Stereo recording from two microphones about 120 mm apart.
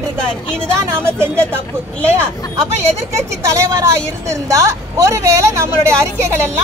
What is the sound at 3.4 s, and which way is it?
A woman's voice, 25° right (ahead or behind).